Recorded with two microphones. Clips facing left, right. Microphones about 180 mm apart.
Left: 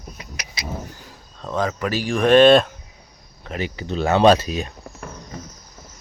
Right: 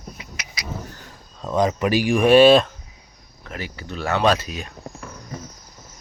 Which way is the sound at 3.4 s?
20° left (ahead or behind).